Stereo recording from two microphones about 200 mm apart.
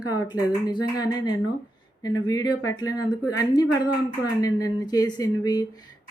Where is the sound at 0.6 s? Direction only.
20° left (ahead or behind).